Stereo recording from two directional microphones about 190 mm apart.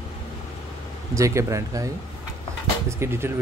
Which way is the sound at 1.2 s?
15° right (ahead or behind).